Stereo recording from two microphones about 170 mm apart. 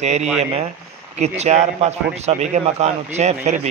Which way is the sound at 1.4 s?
40° right (ahead or behind).